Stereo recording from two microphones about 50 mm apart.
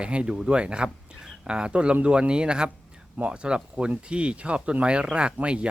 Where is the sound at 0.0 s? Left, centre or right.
Right.